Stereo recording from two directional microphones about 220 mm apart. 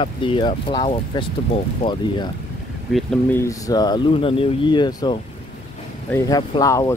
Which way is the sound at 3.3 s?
15° left (ahead or behind).